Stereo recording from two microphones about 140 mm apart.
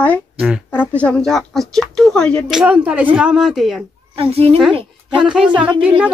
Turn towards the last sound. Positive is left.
turn(degrees=-10)  # may be behind; listen again after turning